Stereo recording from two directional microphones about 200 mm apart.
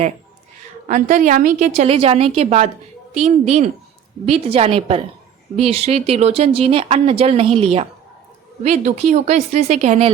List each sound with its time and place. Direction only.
0.9 s a woman's voice: 40° right (ahead or behind)